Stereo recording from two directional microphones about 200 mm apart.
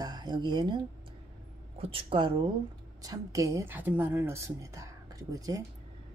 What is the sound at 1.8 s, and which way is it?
A woman's voice, 25° right (ahead or behind).